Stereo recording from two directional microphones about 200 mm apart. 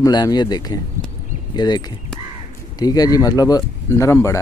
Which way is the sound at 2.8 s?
20° left (ahead or behind).